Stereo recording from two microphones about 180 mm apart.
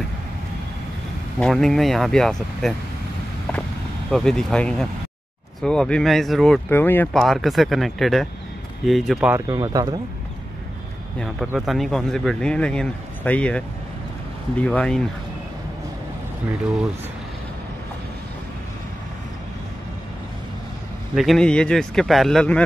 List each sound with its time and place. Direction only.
1.4 s speech: centre (ahead or behind)
4.1 s speech: 5° left (ahead or behind)
9.5 s speech: 20° right (ahead or behind)
11.1 s speech: centre (ahead or behind)
21.1 s speech: centre (ahead or behind)